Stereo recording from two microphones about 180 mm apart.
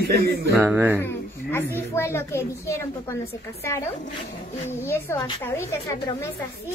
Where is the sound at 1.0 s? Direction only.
10° left (ahead or behind).